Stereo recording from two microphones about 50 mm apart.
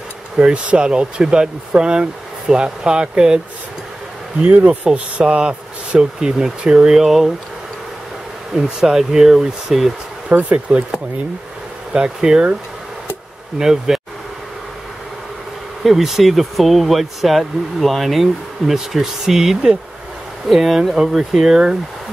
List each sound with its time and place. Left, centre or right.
0.4 s speech: right
4.4 s speech: right; by 7.3 s centre
8.5 s speech: centre
10.3 s speech: right
11.9 s speech: centre
13.6 s speech: centre
15.8 s speech: centre